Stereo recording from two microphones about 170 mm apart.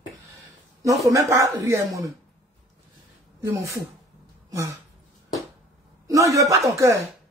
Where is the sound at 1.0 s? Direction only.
20° right (ahead or behind).